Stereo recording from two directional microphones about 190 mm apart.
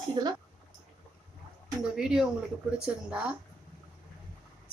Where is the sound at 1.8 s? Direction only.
5° right (ahead or behind).